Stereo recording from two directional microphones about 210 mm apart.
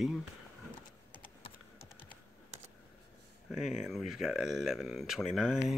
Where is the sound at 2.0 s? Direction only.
35° right (ahead or behind).